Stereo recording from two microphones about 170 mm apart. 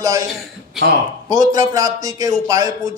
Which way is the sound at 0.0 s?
20° right (ahead or behind).